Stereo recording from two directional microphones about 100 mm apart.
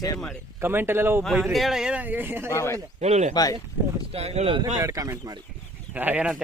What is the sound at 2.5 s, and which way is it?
Speech, 25° left (ahead or behind).